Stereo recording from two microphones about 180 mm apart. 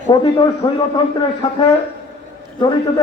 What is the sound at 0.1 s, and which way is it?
Speech, 25° left (ahead or behind).